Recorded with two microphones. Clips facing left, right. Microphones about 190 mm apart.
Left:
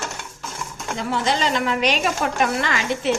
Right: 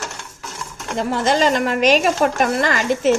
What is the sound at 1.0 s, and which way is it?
A woman's voice, 45° right (ahead or behind).